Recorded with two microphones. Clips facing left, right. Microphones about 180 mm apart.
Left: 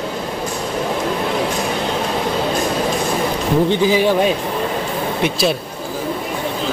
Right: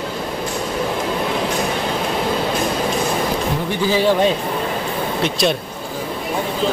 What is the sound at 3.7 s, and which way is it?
Speech, 15° left (ahead or behind).